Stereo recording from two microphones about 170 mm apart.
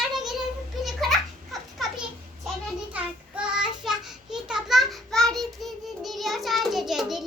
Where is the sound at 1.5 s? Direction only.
Centre (ahead or behind).